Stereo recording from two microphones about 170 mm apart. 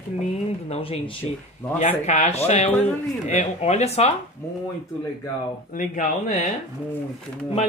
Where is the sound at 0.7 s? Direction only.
35° left (ahead or behind).